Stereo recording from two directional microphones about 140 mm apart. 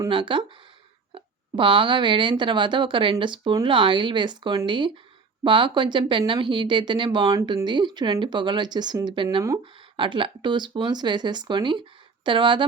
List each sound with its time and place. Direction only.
0.1 s speech: 35° right (ahead or behind)